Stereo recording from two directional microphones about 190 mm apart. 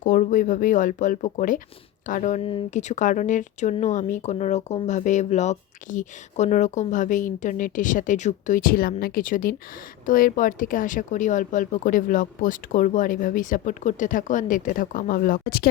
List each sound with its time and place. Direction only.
0.0 s speech: 45° left (ahead or behind)